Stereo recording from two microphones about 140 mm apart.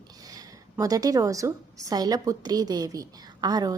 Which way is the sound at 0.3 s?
25° right (ahead or behind).